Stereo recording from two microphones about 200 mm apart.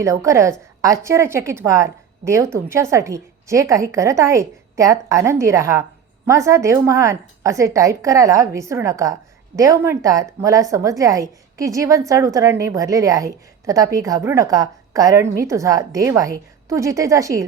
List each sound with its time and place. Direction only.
0.0 s a woman's voice: 15° right (ahead or behind)